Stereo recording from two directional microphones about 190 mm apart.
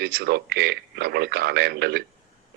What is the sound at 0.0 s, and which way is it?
Speech, 55° right (ahead or behind).